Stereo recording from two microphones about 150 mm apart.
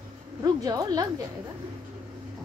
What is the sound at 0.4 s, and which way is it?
Speech, 25° right (ahead or behind).